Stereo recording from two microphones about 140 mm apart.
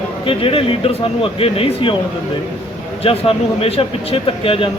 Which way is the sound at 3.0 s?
45° left (ahead or behind).